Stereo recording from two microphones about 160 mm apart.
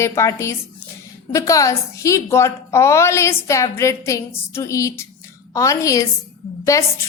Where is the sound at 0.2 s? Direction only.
20° left (ahead or behind).